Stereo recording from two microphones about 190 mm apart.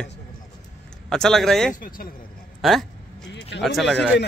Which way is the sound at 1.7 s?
50° left (ahead or behind).